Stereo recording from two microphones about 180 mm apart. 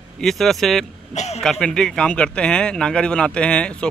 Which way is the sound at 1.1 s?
40° left (ahead or behind).